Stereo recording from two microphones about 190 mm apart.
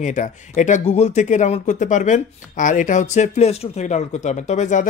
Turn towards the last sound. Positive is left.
turn(degrees=40)  # may be behind; listen again after turning